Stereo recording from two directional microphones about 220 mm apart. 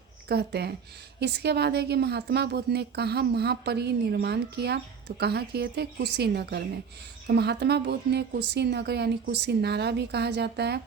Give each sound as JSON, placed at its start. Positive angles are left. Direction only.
{"t": 0.3, "sound": "a woman's voice", "side_deg": -50}